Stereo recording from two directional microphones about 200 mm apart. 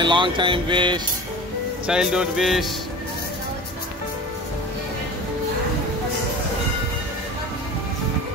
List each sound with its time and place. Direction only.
0.0 s speech: 25° right (ahead or behind)
1.9 s music: 5° right (ahead or behind)